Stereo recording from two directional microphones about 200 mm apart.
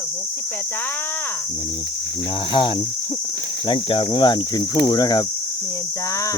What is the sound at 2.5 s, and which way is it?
Speech, 25° left (ahead or behind).